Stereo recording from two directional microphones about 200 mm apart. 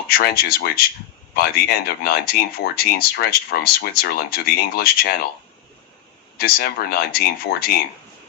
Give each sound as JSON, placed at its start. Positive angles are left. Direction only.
{"t": 0.1, "sound": "speech", "side_deg": 50}
{"t": 6.3, "sound": "speech", "side_deg": 50}